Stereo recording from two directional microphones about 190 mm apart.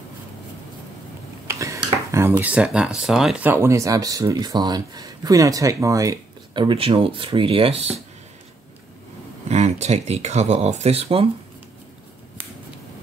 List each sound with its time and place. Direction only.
1.5 s speech: 15° right (ahead or behind); by 8.0 s 30° right (ahead or behind)
9.5 s speech: 35° right (ahead or behind)